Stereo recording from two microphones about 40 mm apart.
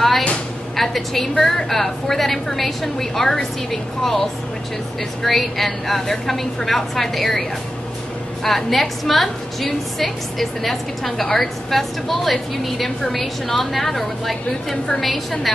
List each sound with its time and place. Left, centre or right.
0.7 s a woman's voice: centre
8.5 s a woman's voice: centre